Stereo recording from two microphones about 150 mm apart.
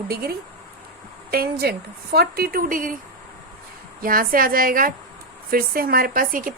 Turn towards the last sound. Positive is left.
turn(degrees=-70)  # may be behind; listen again after turning